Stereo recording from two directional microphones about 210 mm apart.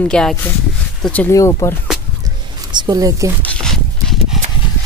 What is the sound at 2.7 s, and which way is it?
Speech, 20° right (ahead or behind).